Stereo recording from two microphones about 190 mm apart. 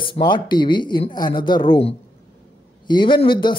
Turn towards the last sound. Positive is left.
turn(degrees=25)  # may be behind; listen again after turning